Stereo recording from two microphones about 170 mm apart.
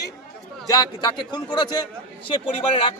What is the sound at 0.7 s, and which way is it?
A man's voice, 25° left (ahead or behind).